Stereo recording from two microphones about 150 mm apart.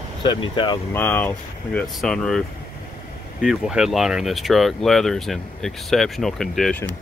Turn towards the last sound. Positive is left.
turn(degrees=0)  # may be behind; listen again after turning